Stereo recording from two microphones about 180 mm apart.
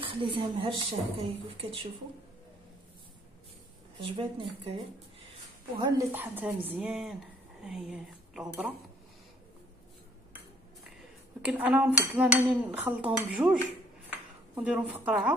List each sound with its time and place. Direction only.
0.0 s a woman's voice: 30° right (ahead or behind)
4.0 s a woman's voice: 30° right (ahead or behind)
5.8 s dishes: 20° right (ahead or behind)
7.6 s speech: 5° right (ahead or behind)
11.4 s dishes: 10° right (ahead or behind)